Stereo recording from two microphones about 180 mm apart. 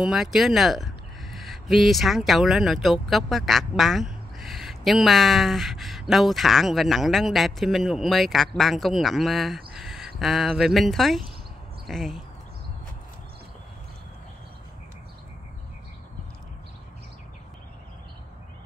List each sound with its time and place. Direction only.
0.0 s speech: centre (ahead or behind)
9.8 s a sound: centre (ahead or behind)
10.1 s speech: centre (ahead or behind)